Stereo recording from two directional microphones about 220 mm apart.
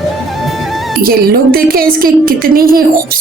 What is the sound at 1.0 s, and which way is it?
A woman's voice, 40° right (ahead or behind).